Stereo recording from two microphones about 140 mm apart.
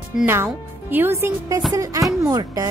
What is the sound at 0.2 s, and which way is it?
Speech, 15° right (ahead or behind).